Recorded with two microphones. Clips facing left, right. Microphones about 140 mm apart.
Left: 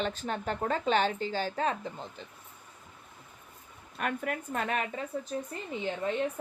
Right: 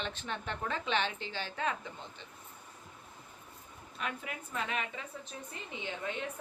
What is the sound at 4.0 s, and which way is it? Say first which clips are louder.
A woman's voice: left 7 dB; 50° left (ahead or behind).